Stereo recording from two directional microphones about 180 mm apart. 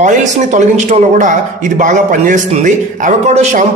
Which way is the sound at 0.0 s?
40° right (ahead or behind).